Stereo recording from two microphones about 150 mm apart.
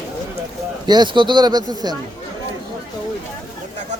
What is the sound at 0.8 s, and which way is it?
Speech, 30° right (ahead or behind).